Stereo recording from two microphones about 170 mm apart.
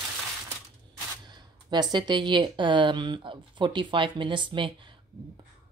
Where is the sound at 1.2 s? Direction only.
25° right (ahead or behind).